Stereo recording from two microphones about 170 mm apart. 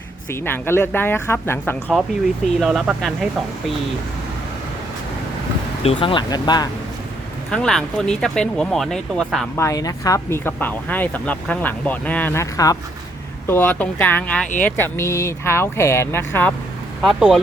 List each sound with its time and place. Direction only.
0.3 s speech: 10° left (ahead or behind)
2.6 s speech: 5° right (ahead or behind)
5.8 s speech: 30° left (ahead or behind)
7.5 s speech: 5° left (ahead or behind)
9.6 s speech: 20° left (ahead or behind)
17.0 s speech: 5° right (ahead or behind)